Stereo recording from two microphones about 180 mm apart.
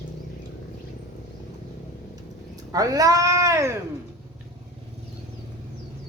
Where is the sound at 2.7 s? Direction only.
20° right (ahead or behind).